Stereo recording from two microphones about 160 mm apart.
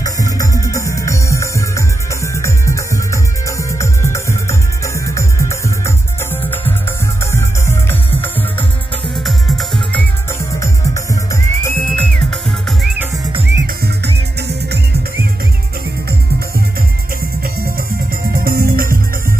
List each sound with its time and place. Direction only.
0.0 s music: 20° left (ahead or behind)
9.1 s music: centre (ahead or behind)
11.6 s music: 10° left (ahead or behind)
13.5 s music: 90° right
18.4 s music: 65° right (ahead or behind)